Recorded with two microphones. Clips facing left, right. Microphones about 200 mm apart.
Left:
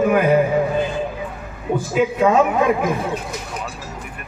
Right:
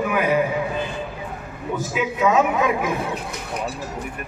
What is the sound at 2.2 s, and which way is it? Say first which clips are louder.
Speech: left 1 dB; 50° left (ahead or behind).